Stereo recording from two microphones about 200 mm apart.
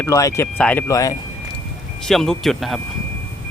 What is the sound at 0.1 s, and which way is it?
Speech, 15° left (ahead or behind).